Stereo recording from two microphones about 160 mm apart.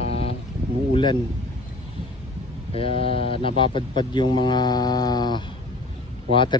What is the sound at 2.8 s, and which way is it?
Speech, 35° left (ahead or behind).